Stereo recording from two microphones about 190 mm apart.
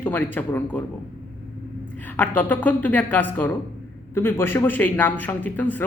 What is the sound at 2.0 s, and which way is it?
A man's voice, 10° left (ahead or behind).